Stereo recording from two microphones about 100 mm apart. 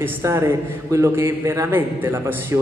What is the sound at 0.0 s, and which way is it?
A man's voice, 25° right (ahead or behind).